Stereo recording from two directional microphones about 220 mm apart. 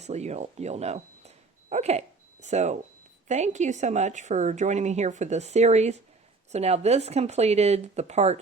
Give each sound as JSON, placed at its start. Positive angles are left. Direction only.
{"t": 0.0, "sound": "a woman's voice", "side_deg": -30}